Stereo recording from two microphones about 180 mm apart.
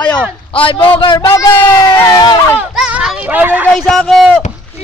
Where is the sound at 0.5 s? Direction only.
30° left (ahead or behind).